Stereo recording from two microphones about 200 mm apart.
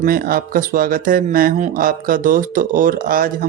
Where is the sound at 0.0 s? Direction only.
45° right (ahead or behind).